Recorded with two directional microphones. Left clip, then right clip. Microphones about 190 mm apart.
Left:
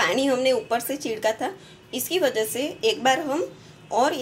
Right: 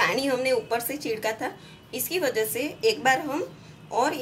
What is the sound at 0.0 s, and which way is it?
A woman's voice, 15° left (ahead or behind).